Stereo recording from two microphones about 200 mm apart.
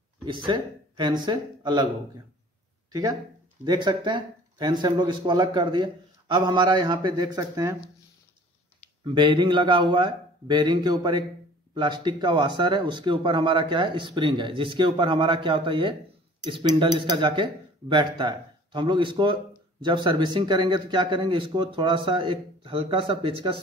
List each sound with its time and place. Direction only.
0.2 s speech: 25° right (ahead or behind)
2.9 s speech: 20° right (ahead or behind)
9.0 s speech: 25° right (ahead or behind)